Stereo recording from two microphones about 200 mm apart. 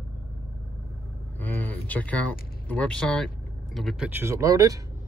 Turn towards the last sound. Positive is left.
turn(degrees=-15)  # may be behind; listen again after turning